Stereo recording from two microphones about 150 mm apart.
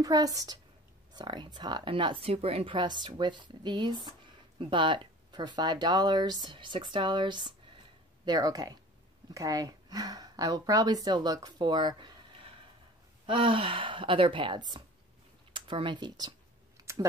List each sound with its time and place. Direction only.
0.0 s a woman's voice: 25° right (ahead or behind)
15.5 s computer keyboard: 35° right (ahead or behind)